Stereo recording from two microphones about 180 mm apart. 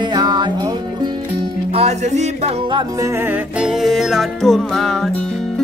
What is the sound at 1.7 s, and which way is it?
Music, 35° right (ahead or behind).